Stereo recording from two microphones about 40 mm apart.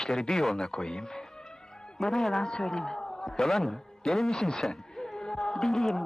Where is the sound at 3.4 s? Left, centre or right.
Centre.